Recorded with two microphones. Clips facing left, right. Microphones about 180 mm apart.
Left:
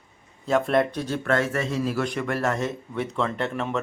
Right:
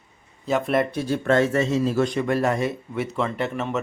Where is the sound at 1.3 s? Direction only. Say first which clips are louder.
Right 5 dB; 25° right (ahead or behind).